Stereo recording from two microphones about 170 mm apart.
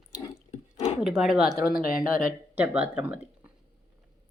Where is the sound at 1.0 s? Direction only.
Centre (ahead or behind).